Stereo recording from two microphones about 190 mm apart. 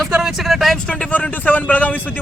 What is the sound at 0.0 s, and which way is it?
Speech, centre (ahead or behind).